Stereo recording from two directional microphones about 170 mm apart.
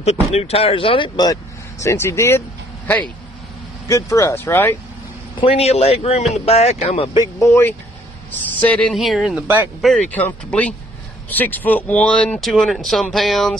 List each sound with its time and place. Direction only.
0.3 s speech: 35° left (ahead or behind); by 2.4 s 15° left (ahead or behind)
3.8 s speech: 20° left (ahead or behind)
5.4 s speech: 35° left (ahead or behind)
7.3 s speech: 15° left (ahead or behind)